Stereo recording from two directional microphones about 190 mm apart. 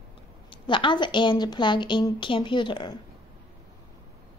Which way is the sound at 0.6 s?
25° left (ahead or behind).